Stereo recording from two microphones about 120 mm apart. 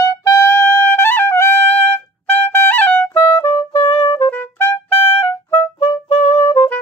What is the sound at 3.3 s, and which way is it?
Music, 40° left (ahead or behind).